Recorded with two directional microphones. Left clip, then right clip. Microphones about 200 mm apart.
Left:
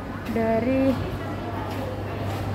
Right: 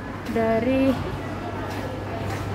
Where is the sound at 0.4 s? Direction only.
15° right (ahead or behind).